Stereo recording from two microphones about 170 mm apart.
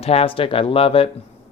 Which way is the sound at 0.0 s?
35° left (ahead or behind).